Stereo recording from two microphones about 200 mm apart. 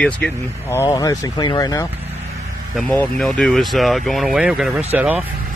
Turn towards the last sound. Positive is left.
turn(degrees=-5)  # may be behind; listen again after turning